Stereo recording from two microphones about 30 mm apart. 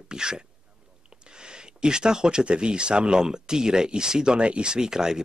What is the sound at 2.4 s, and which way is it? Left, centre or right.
Speech, right.